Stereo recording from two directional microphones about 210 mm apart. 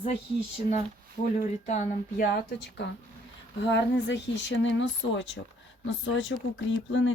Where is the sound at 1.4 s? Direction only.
40° left (ahead or behind).